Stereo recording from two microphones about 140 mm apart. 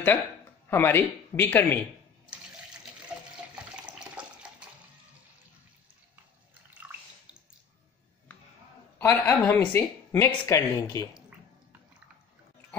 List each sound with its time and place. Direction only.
0.7 s speech: 15° left (ahead or behind)
3.5 s water: 10° right (ahead or behind)
9.0 s speech: 15° left (ahead or behind)